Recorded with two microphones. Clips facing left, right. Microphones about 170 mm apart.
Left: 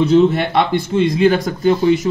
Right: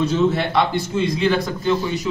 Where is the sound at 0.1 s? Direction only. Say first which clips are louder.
Left 6 dB; 60° left (ahead or behind).